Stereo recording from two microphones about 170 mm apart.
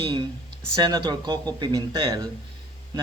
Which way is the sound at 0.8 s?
25° right (ahead or behind).